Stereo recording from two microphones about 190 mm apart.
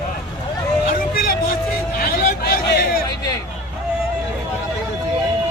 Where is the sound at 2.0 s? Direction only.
55° left (ahead or behind).